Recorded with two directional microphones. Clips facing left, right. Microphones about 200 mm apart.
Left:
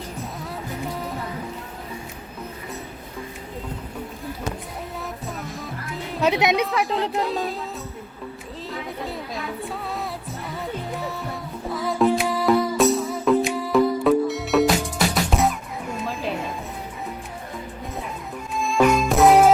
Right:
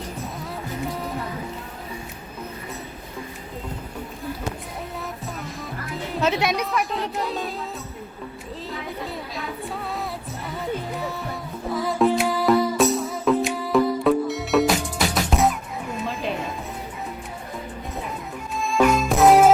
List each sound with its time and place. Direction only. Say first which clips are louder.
6.2 s a woman's voice: left 3 dB; 15° left (ahead or behind)
6.7 s speech: left 2 dB; centre (ahead or behind)
8.7 s music: left 2 dB; centre (ahead or behind)
18.8 s music: left 1 dB; centre (ahead or behind)